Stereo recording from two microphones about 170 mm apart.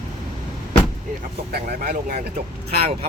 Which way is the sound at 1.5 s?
60° right (ahead or behind).